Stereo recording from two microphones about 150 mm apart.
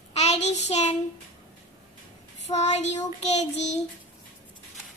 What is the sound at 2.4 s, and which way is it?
Child singing, 50° left (ahead or behind).